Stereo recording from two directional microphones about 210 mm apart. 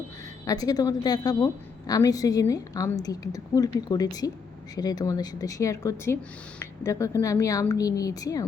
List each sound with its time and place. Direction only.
0.4 s a woman's voice: 20° left (ahead or behind)